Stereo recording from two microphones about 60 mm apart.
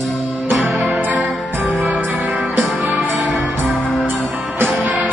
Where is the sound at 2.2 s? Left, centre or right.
Centre.